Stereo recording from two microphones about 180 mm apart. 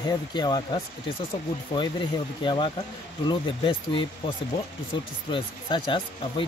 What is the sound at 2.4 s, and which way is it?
Speech, 25° left (ahead or behind).